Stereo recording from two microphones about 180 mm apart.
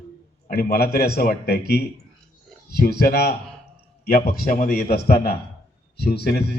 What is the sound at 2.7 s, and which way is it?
A man's voice, 65° left (ahead or behind).